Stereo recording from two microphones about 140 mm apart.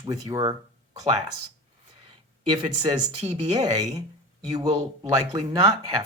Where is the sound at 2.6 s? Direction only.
35° right (ahead or behind).